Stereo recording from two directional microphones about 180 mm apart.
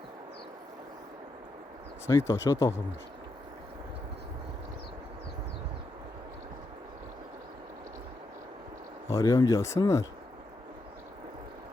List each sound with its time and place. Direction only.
2.0 s speech: 15° left (ahead or behind)
9.0 s speech: 20° left (ahead or behind)